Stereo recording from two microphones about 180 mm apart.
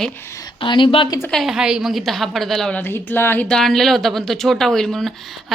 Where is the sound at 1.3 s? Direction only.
Centre (ahead or behind).